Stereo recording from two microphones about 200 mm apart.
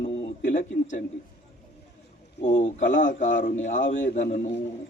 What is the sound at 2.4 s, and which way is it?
Speech, 35° left (ahead or behind).